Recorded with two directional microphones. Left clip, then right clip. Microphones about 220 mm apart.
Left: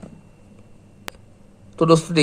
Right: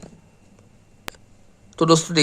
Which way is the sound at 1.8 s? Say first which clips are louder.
Left 1 dB; 20° right (ahead or behind).